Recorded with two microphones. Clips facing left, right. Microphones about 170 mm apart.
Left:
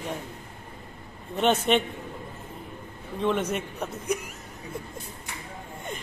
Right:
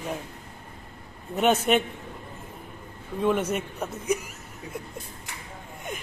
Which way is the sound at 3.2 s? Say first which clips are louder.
Right 2 dB; 10° right (ahead or behind).